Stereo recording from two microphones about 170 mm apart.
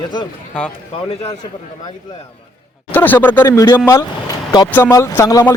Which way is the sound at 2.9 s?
10° left (ahead or behind).